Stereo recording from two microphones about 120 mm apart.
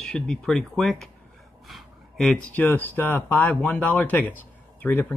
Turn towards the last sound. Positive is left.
turn(degrees=15)  # may be behind; listen again after turning